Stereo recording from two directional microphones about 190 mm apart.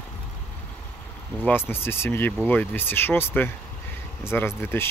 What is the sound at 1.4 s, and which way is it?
Speech, 10° left (ahead or behind).